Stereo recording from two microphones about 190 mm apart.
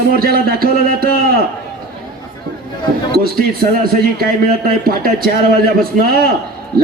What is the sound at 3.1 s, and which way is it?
A man's voice, 50° right (ahead or behind).